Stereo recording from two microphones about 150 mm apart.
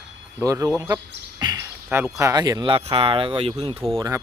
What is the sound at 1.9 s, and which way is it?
Speech, 15° right (ahead or behind).